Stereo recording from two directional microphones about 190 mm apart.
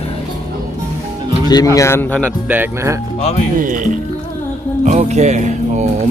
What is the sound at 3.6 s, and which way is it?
Speech, 45° right (ahead or behind).